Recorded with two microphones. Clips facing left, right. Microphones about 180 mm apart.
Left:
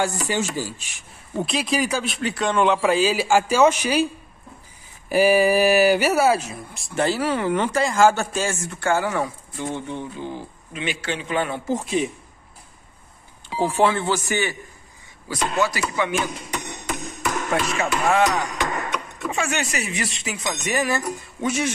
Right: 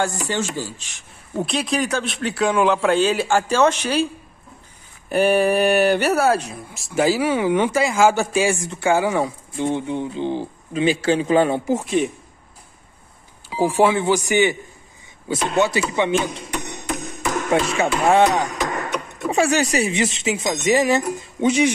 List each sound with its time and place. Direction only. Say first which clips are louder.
0.3 s speech: even; 10° left (ahead or behind)
1.3 s a man's voice: right 1 dB; centre (ahead or behind)
5.1 s speech: even; 5° left (ahead or behind); by 10.2 s 15° right (ahead or behind)
10.2 s a man's voice: right 8 dB; 30° right (ahead or behind)
11.6 s a man's voice: right 3 dB; 5° right (ahead or behind)
13.5 s speech: right 3 dB; 10° right (ahead or behind)